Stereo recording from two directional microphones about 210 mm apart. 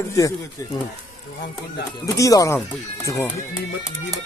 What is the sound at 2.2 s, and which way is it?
Speech, 15° left (ahead or behind).